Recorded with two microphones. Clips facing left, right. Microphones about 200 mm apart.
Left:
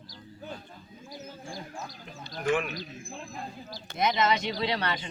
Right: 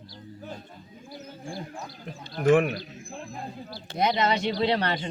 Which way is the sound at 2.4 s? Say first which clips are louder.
Right 8 dB; 55° right (ahead or behind).